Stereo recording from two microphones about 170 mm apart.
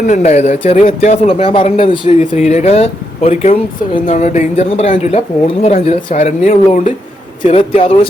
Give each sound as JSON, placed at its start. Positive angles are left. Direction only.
{"t": 0.1, "sound": "speech", "side_deg": 40}
{"t": 4.1, "sound": "speech", "side_deg": 45}
{"t": 7.4, "sound": "speech", "side_deg": 35}